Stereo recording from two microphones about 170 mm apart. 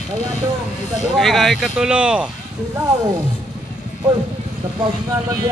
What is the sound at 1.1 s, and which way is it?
Speech, centre (ahead or behind).